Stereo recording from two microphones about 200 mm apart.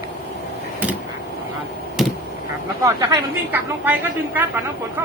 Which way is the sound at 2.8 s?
15° right (ahead or behind).